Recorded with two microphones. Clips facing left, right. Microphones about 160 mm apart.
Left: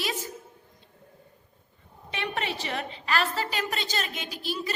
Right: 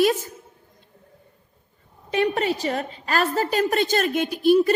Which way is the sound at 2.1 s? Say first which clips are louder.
Right 10 dB; 40° right (ahead or behind).